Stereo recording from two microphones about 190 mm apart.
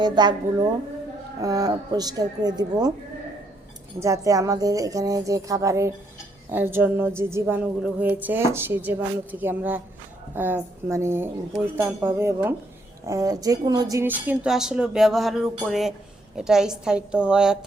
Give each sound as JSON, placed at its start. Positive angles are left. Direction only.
{"t": 0.0, "sound": "speech", "side_deg": -20}
{"t": 1.4, "sound": "speech", "side_deg": -20}
{"t": 4.0, "sound": "speech", "side_deg": -15}
{"t": 13.9, "sound": "music", "side_deg": -10}